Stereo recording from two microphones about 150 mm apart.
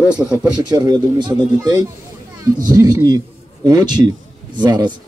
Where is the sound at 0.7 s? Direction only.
25° right (ahead or behind).